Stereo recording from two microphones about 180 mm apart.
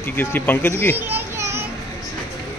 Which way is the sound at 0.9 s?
10° right (ahead or behind).